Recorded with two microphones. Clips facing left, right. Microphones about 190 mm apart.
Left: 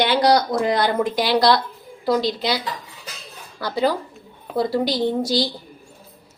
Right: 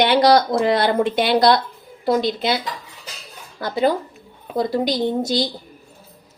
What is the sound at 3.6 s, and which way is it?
A woman's voice, 20° right (ahead or behind).